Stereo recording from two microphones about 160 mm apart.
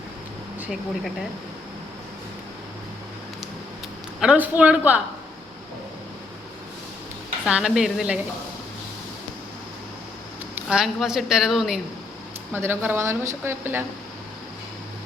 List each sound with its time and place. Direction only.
0.6 s a woman's voice: centre (ahead or behind)
4.2 s a woman's voice: 5° right (ahead or behind)
7.4 s a woman's voice: 5° right (ahead or behind)
10.5 s a woman's voice: 5° right (ahead or behind)
12.5 s a woman's voice: 15° right (ahead or behind)